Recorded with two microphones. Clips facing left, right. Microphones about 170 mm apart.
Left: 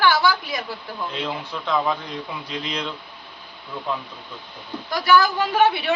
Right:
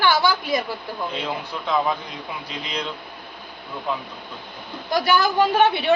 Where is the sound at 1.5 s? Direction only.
5° right (ahead or behind).